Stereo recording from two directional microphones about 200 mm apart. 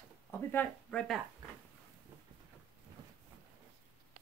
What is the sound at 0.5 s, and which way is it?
Speech, 5° left (ahead or behind).